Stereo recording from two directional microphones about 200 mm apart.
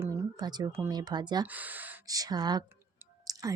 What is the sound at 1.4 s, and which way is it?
Speech, 10° right (ahead or behind).